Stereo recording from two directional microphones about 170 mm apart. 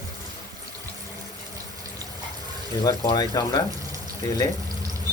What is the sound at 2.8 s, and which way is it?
Speech, 25° left (ahead or behind).